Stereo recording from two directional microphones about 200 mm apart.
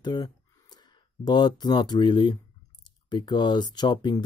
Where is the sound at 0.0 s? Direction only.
20° left (ahead or behind).